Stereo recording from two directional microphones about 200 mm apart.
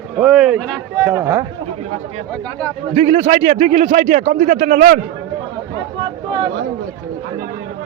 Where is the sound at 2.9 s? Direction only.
30° right (ahead or behind).